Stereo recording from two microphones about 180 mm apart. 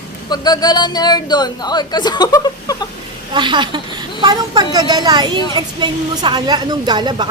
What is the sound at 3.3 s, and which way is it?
A woman's voice, 25° right (ahead or behind).